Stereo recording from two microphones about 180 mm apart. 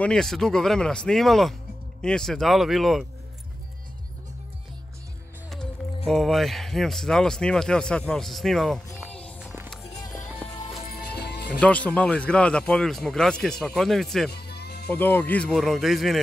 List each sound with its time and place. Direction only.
0.0 s speech: 5° left (ahead or behind)
6.0 s speech: centre (ahead or behind)
9.1 s a sound: 5° left (ahead or behind)
11.1 s music: 65° left (ahead or behind)
11.6 s speech: 5° left (ahead or behind)
14.3 s music: 65° left (ahead or behind)
14.9 s speech: 10° left (ahead or behind)